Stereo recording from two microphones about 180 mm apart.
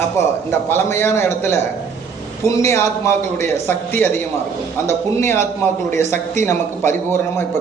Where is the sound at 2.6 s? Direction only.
15° left (ahead or behind).